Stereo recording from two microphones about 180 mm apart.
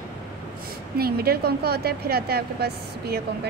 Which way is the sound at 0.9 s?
60° right (ahead or behind).